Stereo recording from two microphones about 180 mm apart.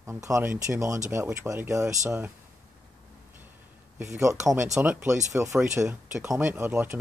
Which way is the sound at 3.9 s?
15° right (ahead or behind).